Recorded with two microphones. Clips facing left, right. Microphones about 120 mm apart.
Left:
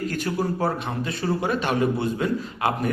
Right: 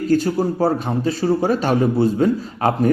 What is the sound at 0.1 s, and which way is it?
A man's voice, 30° right (ahead or behind).